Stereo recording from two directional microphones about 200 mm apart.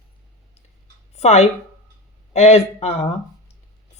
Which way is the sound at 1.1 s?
35° left (ahead or behind).